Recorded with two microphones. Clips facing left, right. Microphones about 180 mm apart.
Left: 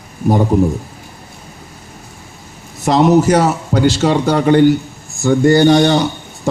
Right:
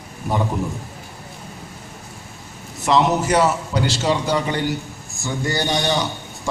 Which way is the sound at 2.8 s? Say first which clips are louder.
Left 7 dB; 40° left (ahead or behind).